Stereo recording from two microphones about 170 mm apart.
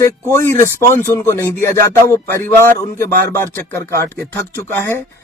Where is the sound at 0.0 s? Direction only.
15° left (ahead or behind).